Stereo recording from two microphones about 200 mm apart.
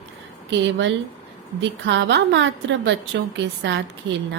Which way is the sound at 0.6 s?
65° right (ahead or behind).